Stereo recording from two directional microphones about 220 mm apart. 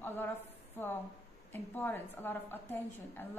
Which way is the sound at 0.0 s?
10° left (ahead or behind).